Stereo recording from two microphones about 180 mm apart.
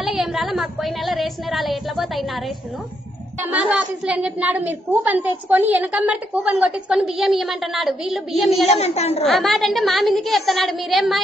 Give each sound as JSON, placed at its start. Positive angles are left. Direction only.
{"t": 0.0, "sound": "a woman's voice", "side_deg": 0}
{"t": 8.6, "sound": "a woman's voice", "side_deg": 35}
{"t": 9.2, "sound": "a woman's voice", "side_deg": 0}